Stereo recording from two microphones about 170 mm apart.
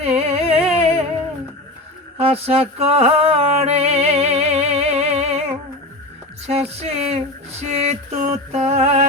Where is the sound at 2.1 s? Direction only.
35° right (ahead or behind).